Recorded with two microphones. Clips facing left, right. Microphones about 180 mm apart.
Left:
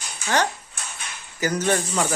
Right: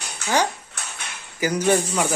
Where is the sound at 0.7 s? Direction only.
70° right (ahead or behind).